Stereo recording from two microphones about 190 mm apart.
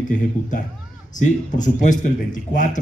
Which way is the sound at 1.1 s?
40° left (ahead or behind).